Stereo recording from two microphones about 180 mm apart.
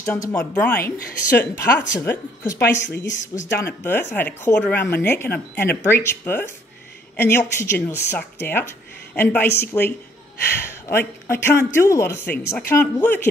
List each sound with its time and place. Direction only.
0.0 s speech: 15° left (ahead or behind)
2.9 s speech: 90° left
3.5 s speech: 15° left (ahead or behind)